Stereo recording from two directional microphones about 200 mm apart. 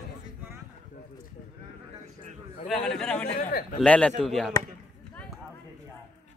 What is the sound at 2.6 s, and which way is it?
Speech, centre (ahead or behind).